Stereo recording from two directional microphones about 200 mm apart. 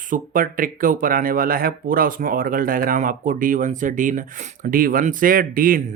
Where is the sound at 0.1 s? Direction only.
45° right (ahead or behind).